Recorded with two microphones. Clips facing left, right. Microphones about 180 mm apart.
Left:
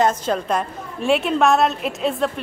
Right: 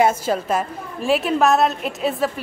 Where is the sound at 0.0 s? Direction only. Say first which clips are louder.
Right 1 dB; 10° right (ahead or behind).